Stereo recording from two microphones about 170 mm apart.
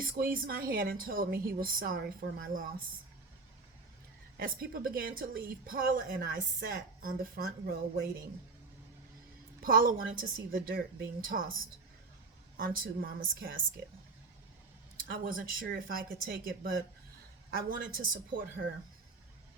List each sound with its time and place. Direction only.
0.0 s a woman's voice: 55° right (ahead or behind)
4.4 s a woman's voice: 60° right (ahead or behind)
9.6 s a woman's voice: 55° right (ahead or behind)
12.5 s a woman's voice: 55° right (ahead or behind)
15.0 s a woman's voice: 55° right (ahead or behind)